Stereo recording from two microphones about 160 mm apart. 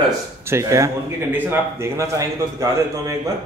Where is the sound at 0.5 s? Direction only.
20° right (ahead or behind).